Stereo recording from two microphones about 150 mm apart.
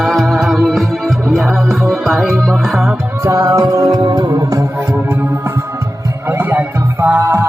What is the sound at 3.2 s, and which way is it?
Music, 20° right (ahead or behind).